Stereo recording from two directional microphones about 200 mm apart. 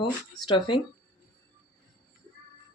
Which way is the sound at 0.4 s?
20° left (ahead or behind).